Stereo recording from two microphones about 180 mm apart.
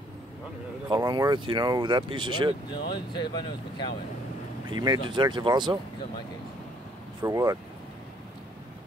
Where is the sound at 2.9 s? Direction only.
25° left (ahead or behind).